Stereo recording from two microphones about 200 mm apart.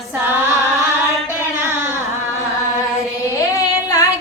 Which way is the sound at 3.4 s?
15° left (ahead or behind).